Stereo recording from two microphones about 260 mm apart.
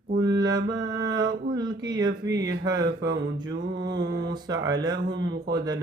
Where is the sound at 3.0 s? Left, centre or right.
Right.